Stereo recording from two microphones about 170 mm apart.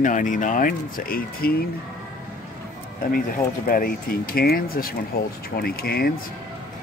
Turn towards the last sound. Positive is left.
turn(degrees=65)  # may be behind; listen again after turning